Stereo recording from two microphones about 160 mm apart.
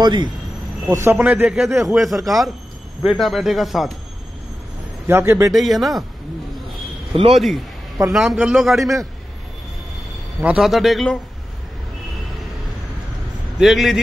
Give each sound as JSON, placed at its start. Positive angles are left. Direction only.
{"t": 0.0, "sound": "speech", "side_deg": -30}
{"t": 0.8, "sound": "a man's voice", "side_deg": -15}
{"t": 5.0, "sound": "speech", "side_deg": -15}
{"t": 5.5, "sound": "a man's voice", "side_deg": 0}
{"t": 7.3, "sound": "a man's voice", "side_deg": 0}
{"t": 10.4, "sound": "a man's voice", "side_deg": -5}
{"t": 13.6, "sound": "a man's voice", "side_deg": 0}